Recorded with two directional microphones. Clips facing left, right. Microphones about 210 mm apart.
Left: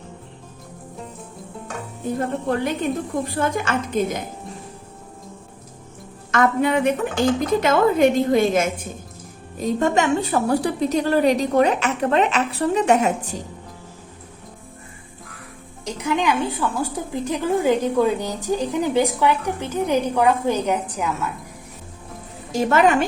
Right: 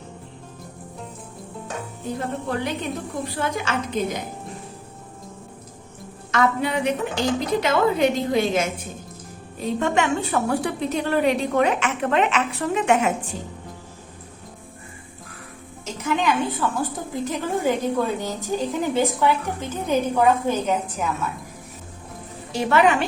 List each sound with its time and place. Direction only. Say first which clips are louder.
2.0 s a woman's voice: left 5 dB; 50° left (ahead or behind)
6.3 s a woman's voice: left 3 dB; 50° left (ahead or behind)
15.8 s a woman's voice: left 2 dB; 15° left (ahead or behind)
22.5 s a woman's voice: left 2 dB; 45° left (ahead or behind)